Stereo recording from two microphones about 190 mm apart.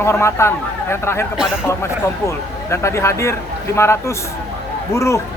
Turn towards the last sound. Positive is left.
turn(degrees=15)  # may be behind; listen again after turning